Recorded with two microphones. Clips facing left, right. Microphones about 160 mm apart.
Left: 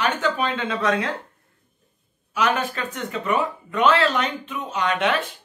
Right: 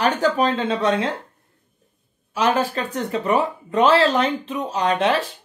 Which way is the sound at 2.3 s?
30° right (ahead or behind).